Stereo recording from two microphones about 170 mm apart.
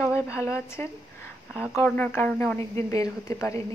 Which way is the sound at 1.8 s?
10° left (ahead or behind).